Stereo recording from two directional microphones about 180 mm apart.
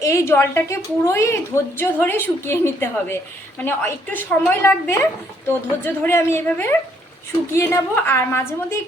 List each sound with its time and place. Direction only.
0.0 s a woman's voice: 15° left (ahead or behind)